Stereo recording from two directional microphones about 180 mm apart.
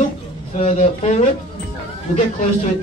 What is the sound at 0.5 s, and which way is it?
Speech, 40° left (ahead or behind).